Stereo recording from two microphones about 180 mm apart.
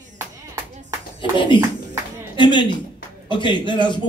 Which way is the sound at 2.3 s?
25° left (ahead or behind).